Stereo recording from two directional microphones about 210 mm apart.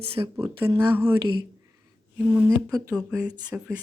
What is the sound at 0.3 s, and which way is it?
Speech, 10° right (ahead or behind).